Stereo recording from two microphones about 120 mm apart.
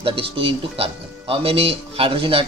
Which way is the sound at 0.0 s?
50° right (ahead or behind).